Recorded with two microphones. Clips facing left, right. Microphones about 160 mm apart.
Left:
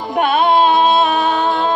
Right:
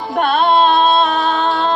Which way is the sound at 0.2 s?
10° left (ahead or behind).